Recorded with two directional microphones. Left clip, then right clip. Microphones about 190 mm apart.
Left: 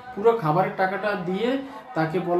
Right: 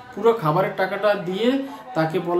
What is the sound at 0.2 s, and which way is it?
Speech, 20° right (ahead or behind).